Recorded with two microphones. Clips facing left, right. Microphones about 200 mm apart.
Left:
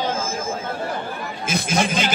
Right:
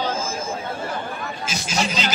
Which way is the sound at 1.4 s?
55° left (ahead or behind).